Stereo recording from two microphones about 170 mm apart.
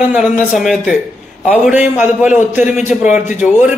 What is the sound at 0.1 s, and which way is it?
Speech, 5° right (ahead or behind).